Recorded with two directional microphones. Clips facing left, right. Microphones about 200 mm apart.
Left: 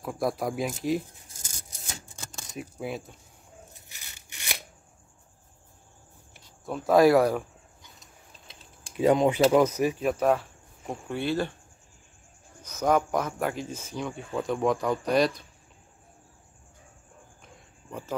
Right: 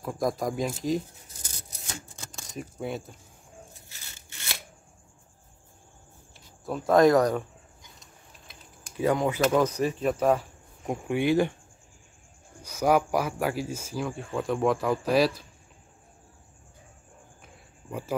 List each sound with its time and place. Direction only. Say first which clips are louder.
0.0 s speech: right 1 dB; centre (ahead or behind)
1.3 s rub: right 2 dB; 45° left (ahead or behind)
2.5 s speech: right 1 dB; centre (ahead or behind)
3.9 s a sound: right 1 dB; 15° left (ahead or behind)
6.6 s speech: even; centre (ahead or behind)
8.5 s typing: right 1 dB; 20° left (ahead or behind)
9.5 s speech: left 2 dB; 10° left (ahead or behind)
10.1 s speech: even; 5° right (ahead or behind)
12.6 s speech: right 1 dB; 10° right (ahead or behind)
17.4 s a sound: even; 10° right (ahead or behind)